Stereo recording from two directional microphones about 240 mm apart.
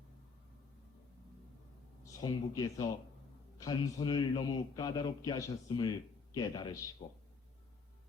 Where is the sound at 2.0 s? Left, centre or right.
Centre.